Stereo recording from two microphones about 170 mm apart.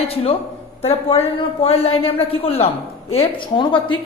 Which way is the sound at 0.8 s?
35° left (ahead or behind).